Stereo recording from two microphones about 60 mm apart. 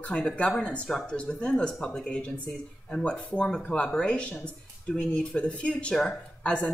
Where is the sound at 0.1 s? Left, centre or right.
Left.